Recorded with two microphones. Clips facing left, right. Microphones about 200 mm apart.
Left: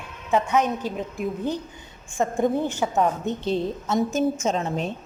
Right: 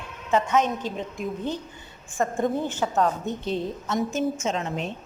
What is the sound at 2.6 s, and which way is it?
Speech, 10° left (ahead or behind).